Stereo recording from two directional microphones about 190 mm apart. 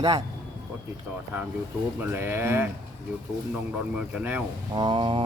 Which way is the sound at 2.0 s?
10° right (ahead or behind).